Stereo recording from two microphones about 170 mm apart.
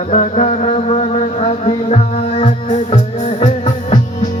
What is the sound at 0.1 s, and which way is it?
Music, 40° left (ahead or behind).